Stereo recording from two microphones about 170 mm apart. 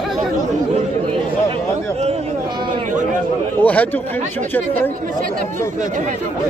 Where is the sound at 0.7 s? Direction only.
30° right (ahead or behind).